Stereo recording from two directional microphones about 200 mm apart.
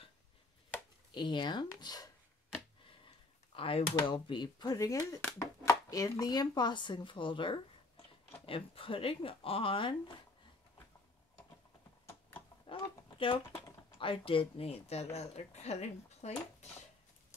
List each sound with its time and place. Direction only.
1.1 s speech: 25° left (ahead or behind)
3.5 s speech: 25° left (ahead or behind)
12.1 s a sound: 10° left (ahead or behind)
12.6 s speech: 25° left (ahead or behind)